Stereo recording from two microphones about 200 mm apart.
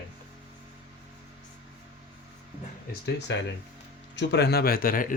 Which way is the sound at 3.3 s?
65° left (ahead or behind).